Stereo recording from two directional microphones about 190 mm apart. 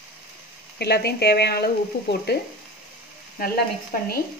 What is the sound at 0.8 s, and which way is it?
Speech, 60° left (ahead or behind).